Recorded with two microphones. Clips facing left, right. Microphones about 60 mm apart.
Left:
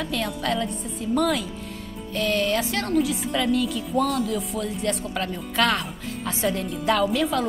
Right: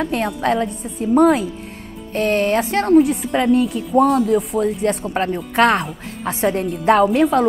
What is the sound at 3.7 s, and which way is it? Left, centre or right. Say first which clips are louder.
Speech: right 8 dB; right.